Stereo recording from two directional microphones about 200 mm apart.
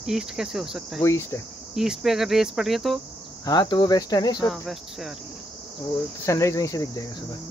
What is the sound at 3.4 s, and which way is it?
Speech, 20° left (ahead or behind).